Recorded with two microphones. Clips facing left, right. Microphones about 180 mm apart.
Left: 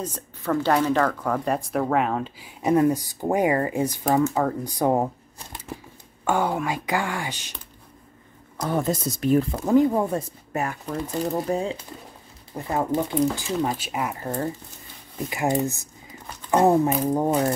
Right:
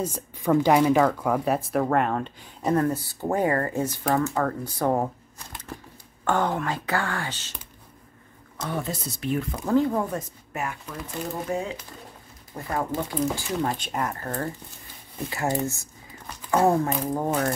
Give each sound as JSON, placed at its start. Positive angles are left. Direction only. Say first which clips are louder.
{"t": 0.0, "sound": "speech", "louder": "right 3 dB", "side_deg": -10}
{"t": 6.2, "sound": "speech", "louder": "left 1 dB", "side_deg": 10}
{"t": 8.6, "sound": "speech", "louder": "left 6 dB", "side_deg": 45}
{"t": 9.7, "sound": "speech", "louder": "left 3 dB", "side_deg": 15}